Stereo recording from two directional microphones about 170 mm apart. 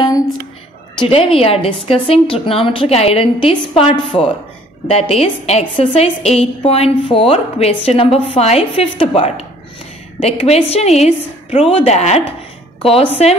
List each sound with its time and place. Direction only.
0.9 s a woman's voice: 30° left (ahead or behind)